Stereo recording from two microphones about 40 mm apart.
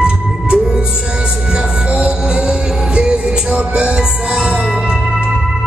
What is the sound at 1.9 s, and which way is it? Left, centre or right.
Music, right.